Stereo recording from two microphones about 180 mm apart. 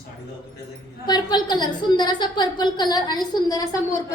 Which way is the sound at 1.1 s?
25° left (ahead or behind).